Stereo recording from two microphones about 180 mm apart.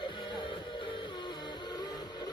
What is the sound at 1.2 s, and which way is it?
Music, 25° left (ahead or behind).